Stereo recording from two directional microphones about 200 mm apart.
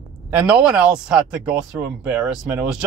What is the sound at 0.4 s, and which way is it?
Speech, 5° right (ahead or behind).